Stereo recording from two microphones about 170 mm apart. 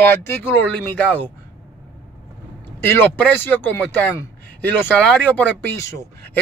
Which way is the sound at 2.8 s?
15° left (ahead or behind).